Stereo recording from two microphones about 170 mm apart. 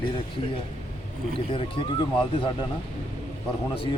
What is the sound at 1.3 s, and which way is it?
Speech, 30° left (ahead or behind).